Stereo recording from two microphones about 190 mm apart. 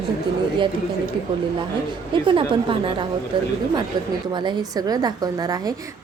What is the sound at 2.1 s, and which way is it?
A woman's voice, 25° right (ahead or behind).